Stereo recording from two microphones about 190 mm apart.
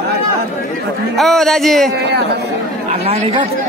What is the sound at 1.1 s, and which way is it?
Speech, centre (ahead or behind).